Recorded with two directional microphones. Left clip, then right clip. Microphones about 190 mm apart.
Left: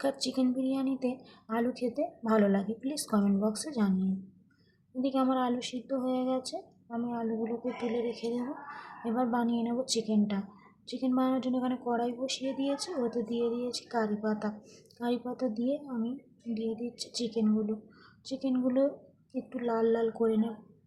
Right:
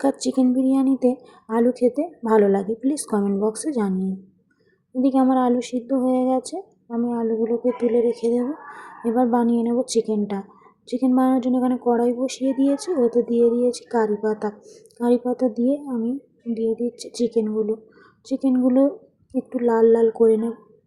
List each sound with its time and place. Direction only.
0.0 s speech: 20° right (ahead or behind)